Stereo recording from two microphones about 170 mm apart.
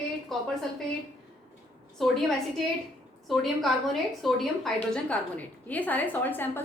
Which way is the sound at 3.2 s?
Centre (ahead or behind).